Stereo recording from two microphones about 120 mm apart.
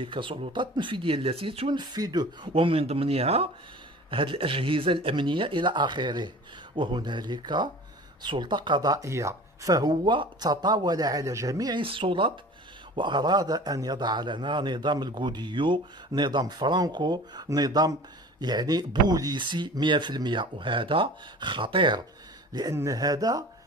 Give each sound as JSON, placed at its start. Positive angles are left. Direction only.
{"t": 0.0, "sound": "speech", "side_deg": -45}
{"t": 1.7, "sound": "a man's voice", "side_deg": -35}
{"t": 2.5, "sound": "a man's voice", "side_deg": -50}
{"t": 11.8, "sound": "a man's voice", "side_deg": -45}